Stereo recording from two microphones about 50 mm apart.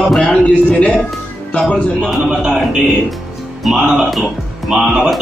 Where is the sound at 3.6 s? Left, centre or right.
Centre.